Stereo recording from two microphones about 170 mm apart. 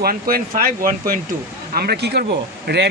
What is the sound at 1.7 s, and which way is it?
Speech, 65° right (ahead or behind).